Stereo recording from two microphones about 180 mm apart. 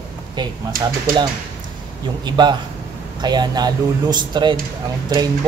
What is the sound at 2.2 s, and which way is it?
A man's voice, 25° right (ahead or behind).